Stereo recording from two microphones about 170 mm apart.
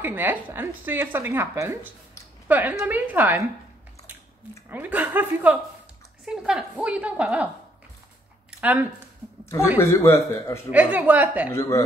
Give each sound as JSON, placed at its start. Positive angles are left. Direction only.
{"t": 0.0, "sound": "speech", "side_deg": -10}
{"t": 4.6, "sound": "speech", "side_deg": -10}
{"t": 8.5, "sound": "a sound", "side_deg": -10}
{"t": 9.8, "sound": "speech", "side_deg": 15}
{"t": 10.7, "sound": "speech", "side_deg": -10}
{"t": 11.5, "sound": "speech", "side_deg": 20}